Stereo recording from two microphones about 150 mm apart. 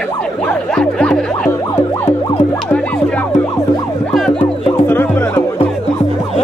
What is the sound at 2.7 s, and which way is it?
Music, 10° left (ahead or behind).